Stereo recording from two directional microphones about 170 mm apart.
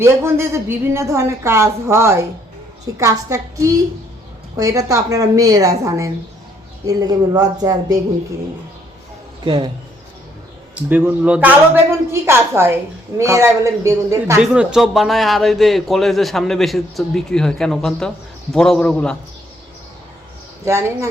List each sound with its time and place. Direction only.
0.0 s a woman's voice: 15° right (ahead or behind)
9.4 s a woman's voice: 30° right (ahead or behind)
10.8 s a woman's voice: 10° right (ahead or behind)
14.4 s a man's voice: 5° right (ahead or behind)
20.7 s a woman's voice: 15° right (ahead or behind)